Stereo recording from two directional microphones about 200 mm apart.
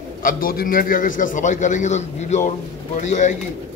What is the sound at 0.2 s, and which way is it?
A man's voice, 45° left (ahead or behind).